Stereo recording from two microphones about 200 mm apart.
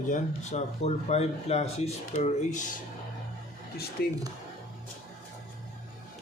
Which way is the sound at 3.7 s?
50° left (ahead or behind).